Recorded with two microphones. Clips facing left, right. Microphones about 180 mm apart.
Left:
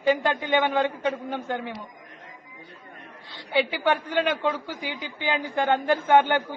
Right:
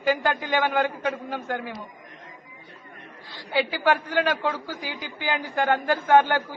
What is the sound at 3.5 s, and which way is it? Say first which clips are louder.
A man's voice: even; 20° left (ahead or behind).